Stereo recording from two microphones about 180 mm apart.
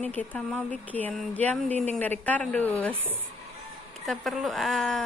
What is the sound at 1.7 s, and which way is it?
Speech, 40° right (ahead or behind).